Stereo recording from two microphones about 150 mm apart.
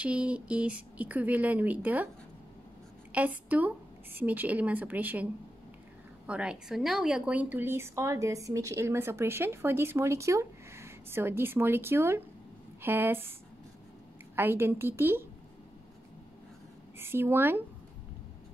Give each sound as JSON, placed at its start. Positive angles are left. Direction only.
{"t": 0.0, "sound": "a woman's voice", "side_deg": -10}
{"t": 3.1, "sound": "a woman's voice", "side_deg": -10}
{"t": 14.3, "sound": "a woman's voice", "side_deg": -15}
{"t": 17.0, "sound": "a woman's voice", "side_deg": -15}